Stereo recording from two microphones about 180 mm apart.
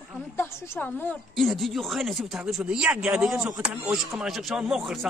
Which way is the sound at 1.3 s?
Centre (ahead or behind).